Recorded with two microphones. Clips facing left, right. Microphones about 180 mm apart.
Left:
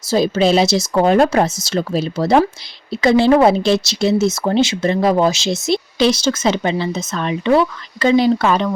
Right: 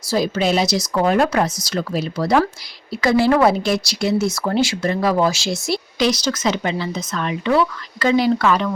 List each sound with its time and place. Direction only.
0.1 s speech: 25° left (ahead or behind)